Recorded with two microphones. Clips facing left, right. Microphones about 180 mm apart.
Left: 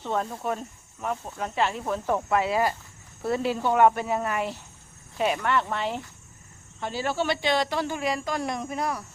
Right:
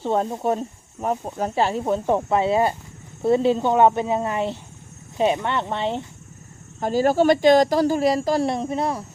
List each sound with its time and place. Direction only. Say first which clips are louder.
0.0 s speech: right 7 dB; 30° right (ahead or behind)
6.7 s speech: right 10 dB; 40° right (ahead or behind)